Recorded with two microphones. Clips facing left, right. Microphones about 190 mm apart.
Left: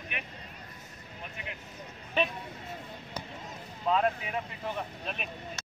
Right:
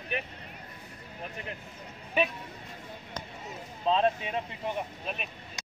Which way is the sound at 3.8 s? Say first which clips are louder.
Right 2 dB; 25° right (ahead or behind).